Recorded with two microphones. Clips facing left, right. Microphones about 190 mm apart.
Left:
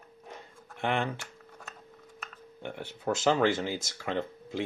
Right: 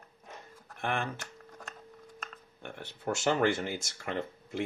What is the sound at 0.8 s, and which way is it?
Speech, 20° left (ahead or behind).